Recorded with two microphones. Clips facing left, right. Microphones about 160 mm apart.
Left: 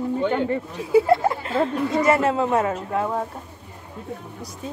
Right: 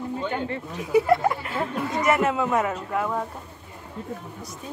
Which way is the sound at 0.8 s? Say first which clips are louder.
Left 2 dB; 25° left (ahead or behind).